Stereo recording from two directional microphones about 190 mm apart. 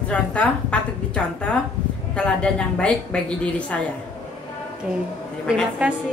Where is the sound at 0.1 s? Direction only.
5° left (ahead or behind).